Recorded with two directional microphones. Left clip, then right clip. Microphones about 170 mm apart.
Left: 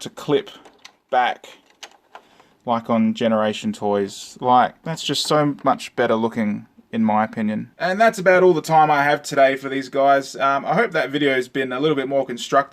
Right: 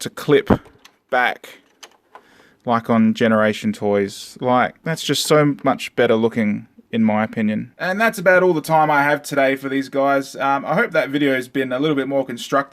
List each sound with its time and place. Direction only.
0.0 s speech: 40° right (ahead or behind)
2.6 s speech: 35° right (ahead or behind)